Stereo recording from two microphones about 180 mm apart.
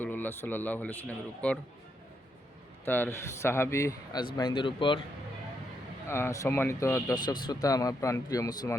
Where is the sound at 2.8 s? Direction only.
10° left (ahead or behind); by 5.0 s 25° left (ahead or behind).